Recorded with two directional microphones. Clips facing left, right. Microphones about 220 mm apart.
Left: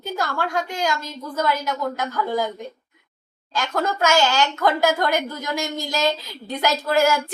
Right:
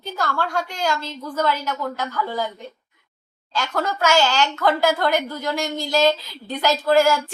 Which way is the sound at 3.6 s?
15° left (ahead or behind).